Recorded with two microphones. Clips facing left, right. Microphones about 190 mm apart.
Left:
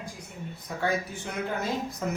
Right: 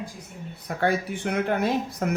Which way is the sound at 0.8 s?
65° right (ahead or behind).